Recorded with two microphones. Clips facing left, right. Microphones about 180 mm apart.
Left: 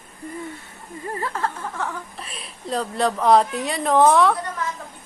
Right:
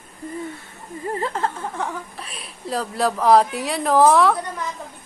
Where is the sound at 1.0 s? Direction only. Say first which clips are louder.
Right 2 dB; 25° right (ahead or behind).